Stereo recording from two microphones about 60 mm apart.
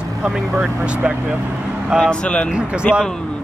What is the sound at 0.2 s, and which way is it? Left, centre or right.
Speech, centre.